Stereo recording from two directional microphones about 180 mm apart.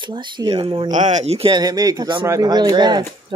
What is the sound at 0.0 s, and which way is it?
Speech, 25° right (ahead or behind).